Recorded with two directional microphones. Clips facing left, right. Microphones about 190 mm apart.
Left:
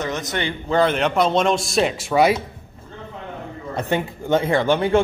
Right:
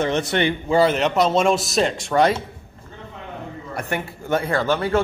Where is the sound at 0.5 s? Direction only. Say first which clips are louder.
Left 1 dB; 5° right (ahead or behind); by 2.4 s 10° left (ahead or behind).